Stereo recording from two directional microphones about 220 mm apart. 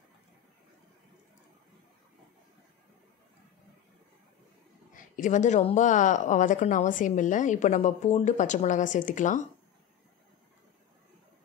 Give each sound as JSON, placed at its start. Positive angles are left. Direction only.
{"t": 4.9, "sound": "a woman's voice", "side_deg": 35}